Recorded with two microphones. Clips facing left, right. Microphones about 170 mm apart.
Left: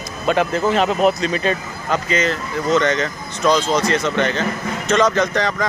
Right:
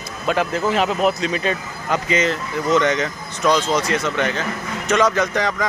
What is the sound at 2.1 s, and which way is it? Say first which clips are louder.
Speech: right 2 dB; 20° right (ahead or behind).